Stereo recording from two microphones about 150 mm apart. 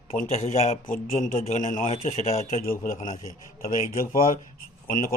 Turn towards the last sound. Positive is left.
turn(degrees=70)  # may be behind; listen again after turning